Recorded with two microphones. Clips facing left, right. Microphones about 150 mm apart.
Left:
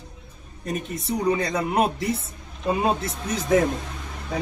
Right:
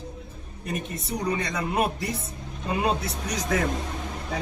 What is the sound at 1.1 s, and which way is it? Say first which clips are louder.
Speech: left 5 dB; 25° left (ahead or behind).